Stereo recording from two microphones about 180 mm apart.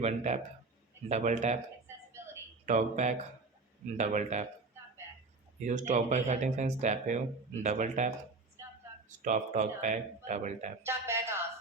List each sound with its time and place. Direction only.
0.3 s speech: 35° right (ahead or behind)
2.6 s speech: 40° right (ahead or behind)
5.6 s speech: 40° right (ahead or behind)
10.8 s speech: 15° right (ahead or behind)